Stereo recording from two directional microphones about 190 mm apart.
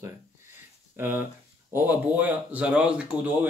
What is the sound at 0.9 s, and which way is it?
Speech, 10° right (ahead or behind).